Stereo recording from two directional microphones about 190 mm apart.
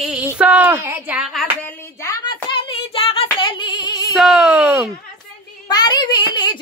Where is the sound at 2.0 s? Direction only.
20° left (ahead or behind).